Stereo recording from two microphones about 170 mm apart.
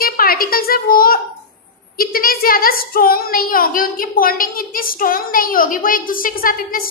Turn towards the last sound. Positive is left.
turn(degrees=55)  # may be behind; listen again after turning